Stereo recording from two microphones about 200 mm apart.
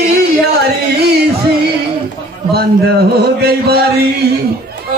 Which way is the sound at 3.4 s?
55° right (ahead or behind).